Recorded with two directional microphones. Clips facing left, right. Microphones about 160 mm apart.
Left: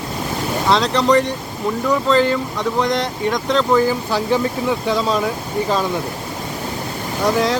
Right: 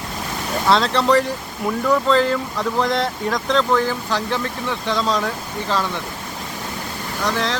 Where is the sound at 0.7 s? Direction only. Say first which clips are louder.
Left 1 dB; centre (ahead or behind).